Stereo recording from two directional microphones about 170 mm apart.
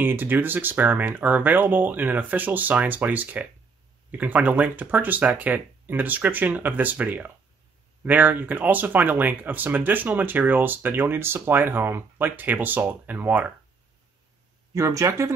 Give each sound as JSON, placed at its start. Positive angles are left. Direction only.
{"t": 0.0, "sound": "speech", "side_deg": -10}
{"t": 14.7, "sound": "speech", "side_deg": -20}